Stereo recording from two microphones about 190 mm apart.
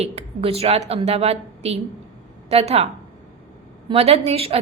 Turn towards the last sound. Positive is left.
turn(degrees=-30)  # may be behind; listen again after turning